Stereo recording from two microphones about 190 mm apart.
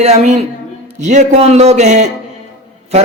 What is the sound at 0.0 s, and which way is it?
A man's voice, 35° right (ahead or behind).